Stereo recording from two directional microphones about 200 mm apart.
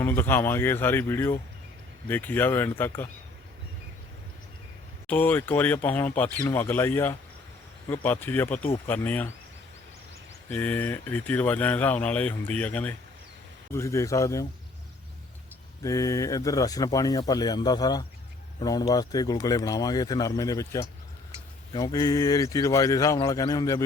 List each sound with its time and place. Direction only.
0.0 s speech: 10° left (ahead or behind)
5.0 s speech: 10° left (ahead or behind)
10.5 s speech: 10° left (ahead or behind)
15.8 s speech: 15° left (ahead or behind)